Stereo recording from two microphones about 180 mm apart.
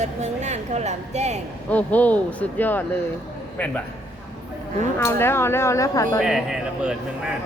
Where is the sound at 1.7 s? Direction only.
10° left (ahead or behind).